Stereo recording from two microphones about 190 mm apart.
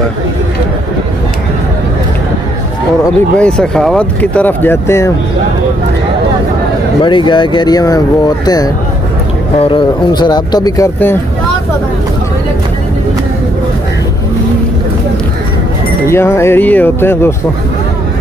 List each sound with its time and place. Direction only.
3.3 s speech: 5° left (ahead or behind)
7.0 s speech: 25° left (ahead or behind)
16.1 s speech: 15° left (ahead or behind)